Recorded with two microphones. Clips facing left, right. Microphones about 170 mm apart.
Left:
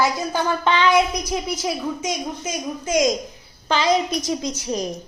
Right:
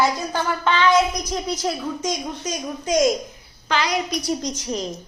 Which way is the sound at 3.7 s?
25° left (ahead or behind).